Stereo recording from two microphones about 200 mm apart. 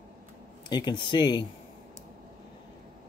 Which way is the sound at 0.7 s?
20° left (ahead or behind).